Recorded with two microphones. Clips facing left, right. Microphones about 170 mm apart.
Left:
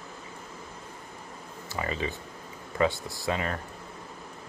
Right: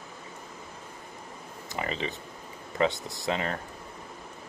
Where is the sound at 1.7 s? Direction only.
20° right (ahead or behind).